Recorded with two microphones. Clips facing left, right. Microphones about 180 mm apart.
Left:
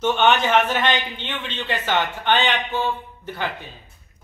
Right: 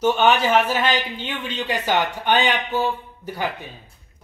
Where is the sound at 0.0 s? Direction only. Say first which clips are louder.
Right 1 dB; 10° right (ahead or behind).